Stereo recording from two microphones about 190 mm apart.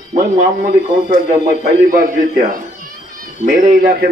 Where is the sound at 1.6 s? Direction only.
45° right (ahead or behind).